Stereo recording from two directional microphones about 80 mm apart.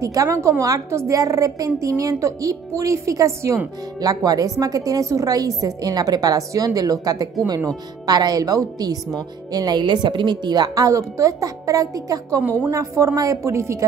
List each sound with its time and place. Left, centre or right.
0.0 s a woman's voice: right